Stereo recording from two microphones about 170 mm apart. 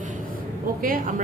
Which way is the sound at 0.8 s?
50° right (ahead or behind).